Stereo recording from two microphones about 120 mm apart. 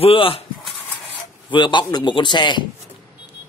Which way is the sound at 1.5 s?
40° left (ahead or behind).